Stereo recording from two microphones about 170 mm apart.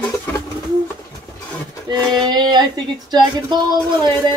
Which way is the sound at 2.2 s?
25° right (ahead or behind).